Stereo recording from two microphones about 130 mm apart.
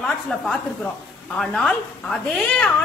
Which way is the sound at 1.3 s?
5° left (ahead or behind).